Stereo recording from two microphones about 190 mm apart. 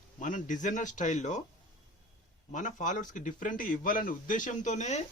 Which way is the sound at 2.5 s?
40° left (ahead or behind).